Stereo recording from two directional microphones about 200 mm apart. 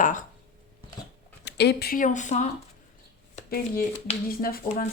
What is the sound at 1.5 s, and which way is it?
Speech, 55° left (ahead or behind).